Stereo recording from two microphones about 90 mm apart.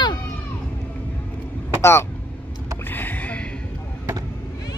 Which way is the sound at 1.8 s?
30° left (ahead or behind).